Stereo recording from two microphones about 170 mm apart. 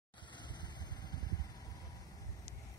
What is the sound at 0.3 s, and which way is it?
Vehicle, 25° left (ahead or behind).